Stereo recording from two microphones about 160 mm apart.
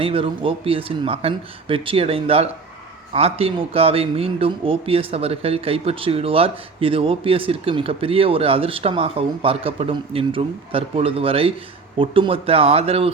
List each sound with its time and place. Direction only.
0.0 s speech: 35° right (ahead or behind)